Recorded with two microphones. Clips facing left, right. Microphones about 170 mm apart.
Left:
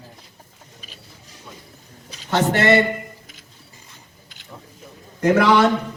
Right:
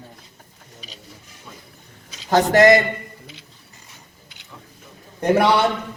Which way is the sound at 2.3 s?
40° right (ahead or behind).